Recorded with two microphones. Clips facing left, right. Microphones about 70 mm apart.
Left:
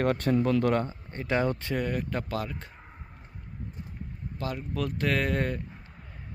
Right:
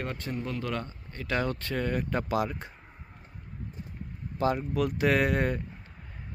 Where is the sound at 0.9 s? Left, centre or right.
Left.